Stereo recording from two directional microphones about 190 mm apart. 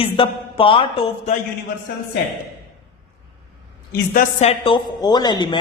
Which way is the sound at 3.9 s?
50° left (ahead or behind).